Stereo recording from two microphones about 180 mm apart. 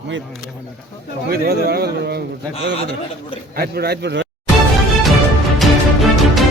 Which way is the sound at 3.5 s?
60° right (ahead or behind).